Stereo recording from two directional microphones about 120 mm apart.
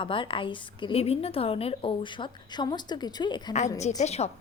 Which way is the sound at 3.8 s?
70° left (ahead or behind).